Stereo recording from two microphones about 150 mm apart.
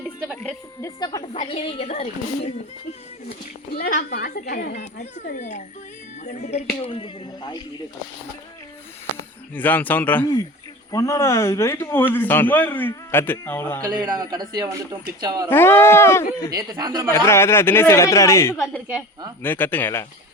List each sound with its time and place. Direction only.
0.8 s a woman's voice: 25° left (ahead or behind)
1.3 s speech: 45° left (ahead or behind)
3.8 s a woman's voice: 65° left (ahead or behind)
4.7 s speech: 55° left (ahead or behind)
6.8 s speech: 35° left (ahead or behind)
9.6 s a man's voice: 10° left (ahead or behind)
13.8 s a man's voice: 25° right (ahead or behind)
15.4 s a man's voice: 15° left (ahead or behind)
16.5 s a man's voice: 25° right (ahead or behind)
17.1 s a man's voice: 15° left (ahead or behind)
18.5 s a woman's voice: centre (ahead or behind)
19.4 s a man's voice: 15° left (ahead or behind)